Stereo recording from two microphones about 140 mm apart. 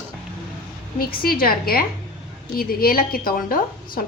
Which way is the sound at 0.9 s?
90° left.